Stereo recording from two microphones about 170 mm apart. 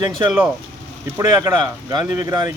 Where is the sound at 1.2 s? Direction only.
15° right (ahead or behind).